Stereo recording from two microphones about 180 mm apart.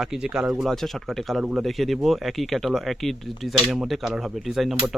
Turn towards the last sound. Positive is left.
turn(degrees=0)  # may be behind; listen again after turning